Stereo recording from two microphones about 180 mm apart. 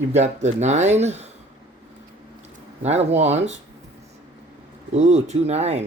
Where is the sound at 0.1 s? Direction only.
40° right (ahead or behind).